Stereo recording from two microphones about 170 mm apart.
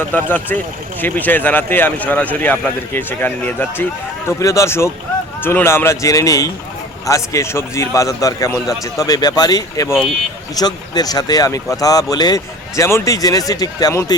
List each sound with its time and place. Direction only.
0.0 s speech: 10° left (ahead or behind)